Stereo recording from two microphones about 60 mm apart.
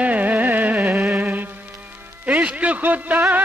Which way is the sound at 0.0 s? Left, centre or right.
Right.